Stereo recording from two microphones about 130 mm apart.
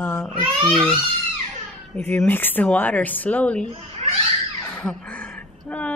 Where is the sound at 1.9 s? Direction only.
15° left (ahead or behind).